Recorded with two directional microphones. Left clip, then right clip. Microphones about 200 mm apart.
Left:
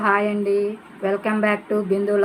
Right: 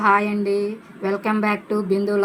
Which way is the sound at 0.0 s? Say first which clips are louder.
Right 2 dB; 35° right (ahead or behind).